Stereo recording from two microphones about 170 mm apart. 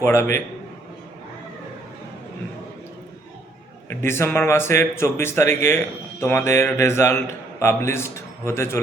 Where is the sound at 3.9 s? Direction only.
15° left (ahead or behind).